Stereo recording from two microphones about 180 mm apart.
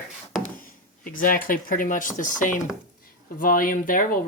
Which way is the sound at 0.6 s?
50° left (ahead or behind).